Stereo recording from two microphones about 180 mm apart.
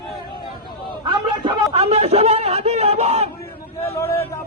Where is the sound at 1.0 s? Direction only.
30° right (ahead or behind).